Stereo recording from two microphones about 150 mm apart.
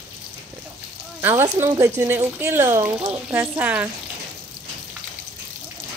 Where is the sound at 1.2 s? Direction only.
15° right (ahead or behind).